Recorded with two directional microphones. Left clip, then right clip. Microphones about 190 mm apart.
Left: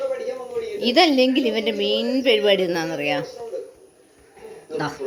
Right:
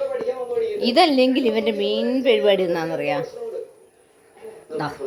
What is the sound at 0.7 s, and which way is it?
A woman's voice, centre (ahead or behind).